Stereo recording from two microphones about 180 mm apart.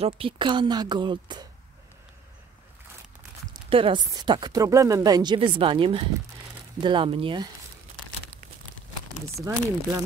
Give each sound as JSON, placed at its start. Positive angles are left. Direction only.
{"t": 0.0, "sound": "speech", "side_deg": -30}
{"t": 3.7, "sound": "speech", "side_deg": -25}
{"t": 9.4, "sound": "speech", "side_deg": -20}